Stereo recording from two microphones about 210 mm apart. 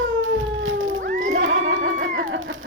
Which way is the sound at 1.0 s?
40° right (ahead or behind).